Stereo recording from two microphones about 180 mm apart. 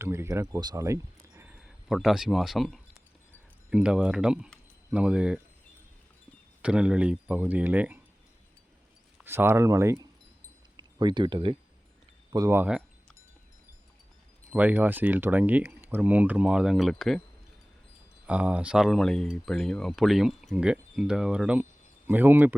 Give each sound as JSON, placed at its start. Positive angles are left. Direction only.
{"t": 0.0, "sound": "speech", "side_deg": -15}
{"t": 6.6, "sound": "speech", "side_deg": -5}
{"t": 9.1, "sound": "speech", "side_deg": -10}
{"t": 14.5, "sound": "speech", "side_deg": -10}
{"t": 18.3, "sound": "speech", "side_deg": -5}